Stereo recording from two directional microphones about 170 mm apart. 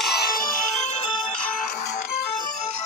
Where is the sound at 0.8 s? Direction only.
40° left (ahead or behind).